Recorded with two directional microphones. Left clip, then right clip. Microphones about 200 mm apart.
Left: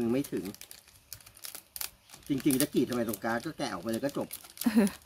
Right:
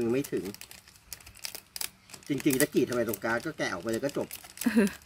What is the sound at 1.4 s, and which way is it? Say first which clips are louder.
Camera: right 5 dB; 10° right (ahead or behind).